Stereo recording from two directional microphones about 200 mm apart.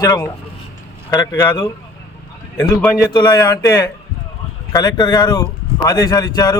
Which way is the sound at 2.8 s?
10° left (ahead or behind).